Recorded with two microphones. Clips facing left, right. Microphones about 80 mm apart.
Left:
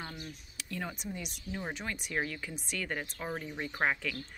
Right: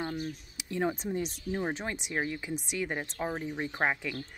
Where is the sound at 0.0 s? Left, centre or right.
Right.